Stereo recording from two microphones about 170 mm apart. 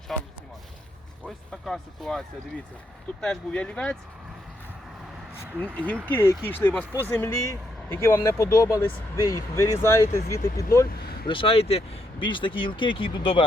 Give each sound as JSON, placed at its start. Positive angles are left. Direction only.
{"t": 0.1, "sound": "speech", "side_deg": 0}
{"t": 1.6, "sound": "speech", "side_deg": 0}
{"t": 5.3, "sound": "speech", "side_deg": 10}
{"t": 10.8, "sound": "vehicle", "side_deg": 65}
{"t": 11.3, "sound": "speech", "side_deg": 30}